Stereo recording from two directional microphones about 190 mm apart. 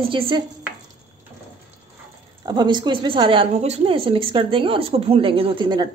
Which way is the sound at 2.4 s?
25° right (ahead or behind).